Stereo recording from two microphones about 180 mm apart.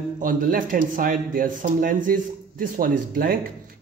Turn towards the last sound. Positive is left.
turn(degrees=-55)  # may be behind; listen again after turning